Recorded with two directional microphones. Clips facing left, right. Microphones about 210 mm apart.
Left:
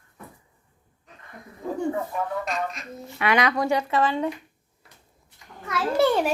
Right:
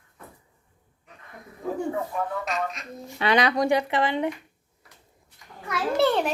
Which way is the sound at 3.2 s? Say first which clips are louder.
Right 1 dB; 30° right (ahead or behind).